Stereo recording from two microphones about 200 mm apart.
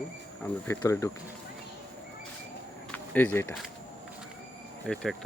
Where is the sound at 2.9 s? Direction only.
10° left (ahead or behind).